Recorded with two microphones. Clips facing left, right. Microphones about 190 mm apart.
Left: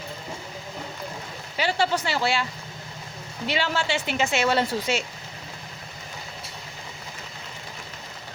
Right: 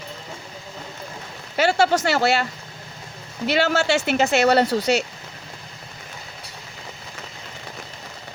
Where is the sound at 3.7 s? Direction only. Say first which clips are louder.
Right 6 dB; 80° right.